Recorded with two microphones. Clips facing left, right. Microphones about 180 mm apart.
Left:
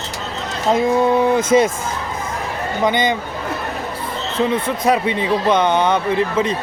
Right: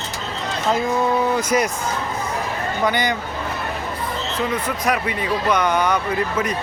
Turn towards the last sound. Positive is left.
turn(degrees=25)  # may be behind; listen again after turning